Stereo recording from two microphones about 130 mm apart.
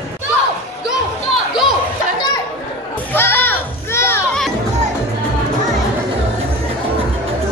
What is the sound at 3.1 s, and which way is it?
Music, 15° left (ahead or behind).